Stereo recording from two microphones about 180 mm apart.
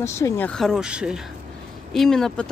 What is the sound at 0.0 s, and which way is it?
Speech, 15° left (ahead or behind).